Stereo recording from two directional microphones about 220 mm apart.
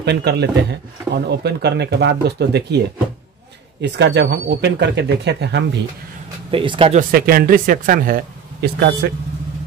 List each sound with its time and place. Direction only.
0.0 s speech: 50° right (ahead or behind)
3.8 s speech: 50° right (ahead or behind)
6.5 s speech: 25° right (ahead or behind); by 9.1 s 45° right (ahead or behind)